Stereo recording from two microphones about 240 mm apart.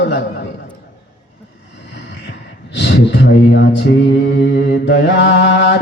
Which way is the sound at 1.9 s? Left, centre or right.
Left.